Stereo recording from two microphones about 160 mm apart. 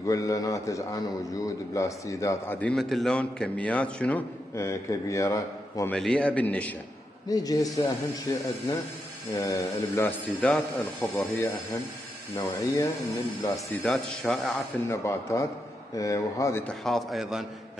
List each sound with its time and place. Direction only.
0.0 s a man's voice: 20° left (ahead or behind)
4.6 s a man's voice: 20° left (ahead or behind)
5.9 s a man's voice: 5° left (ahead or behind)
7.2 s a man's voice: 25° left (ahead or behind)
13.8 s a man's voice: 5° left (ahead or behind)
14.9 s a man's voice: 15° left (ahead or behind)
16.6 s a man's voice: centre (ahead or behind)